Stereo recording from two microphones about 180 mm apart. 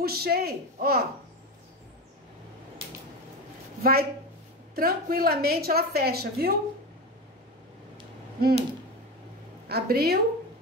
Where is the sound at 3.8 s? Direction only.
55° right (ahead or behind).